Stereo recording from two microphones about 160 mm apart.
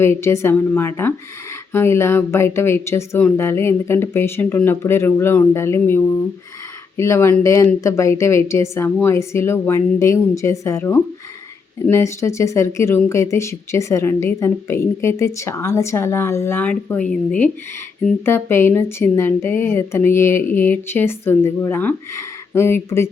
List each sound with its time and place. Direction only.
0.0 s speech: 15° left (ahead or behind)